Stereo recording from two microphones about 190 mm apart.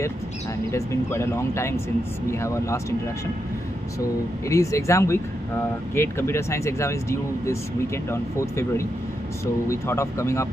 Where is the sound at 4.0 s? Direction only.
15° left (ahead or behind).